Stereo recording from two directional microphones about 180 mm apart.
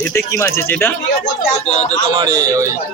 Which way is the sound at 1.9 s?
20° right (ahead or behind).